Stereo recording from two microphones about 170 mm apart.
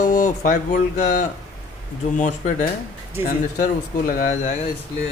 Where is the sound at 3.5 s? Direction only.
50° left (ahead or behind).